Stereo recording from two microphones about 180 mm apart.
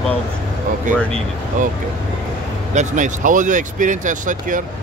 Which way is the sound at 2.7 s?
40° right (ahead or behind).